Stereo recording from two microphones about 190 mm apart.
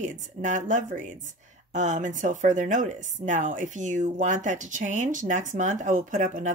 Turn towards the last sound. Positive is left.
turn(degrees=-40)  # may be behind; listen again after turning